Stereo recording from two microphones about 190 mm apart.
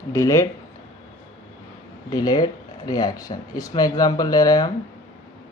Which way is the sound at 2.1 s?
20° left (ahead or behind).